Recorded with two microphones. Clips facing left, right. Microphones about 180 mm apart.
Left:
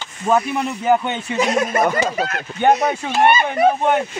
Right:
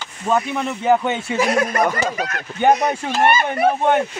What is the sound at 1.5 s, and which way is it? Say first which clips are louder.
Speech: left 2 dB; 5° left (ahead or behind).